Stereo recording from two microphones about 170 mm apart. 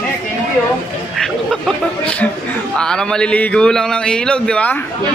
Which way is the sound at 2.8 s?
5° left (ahead or behind).